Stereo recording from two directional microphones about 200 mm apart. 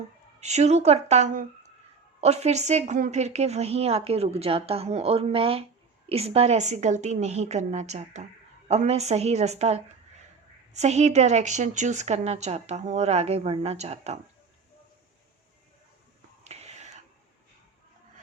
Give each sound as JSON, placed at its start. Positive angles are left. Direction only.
{"t": 0.3, "sound": "a woman's voice", "side_deg": -35}
{"t": 16.4, "sound": "whispering", "side_deg": -35}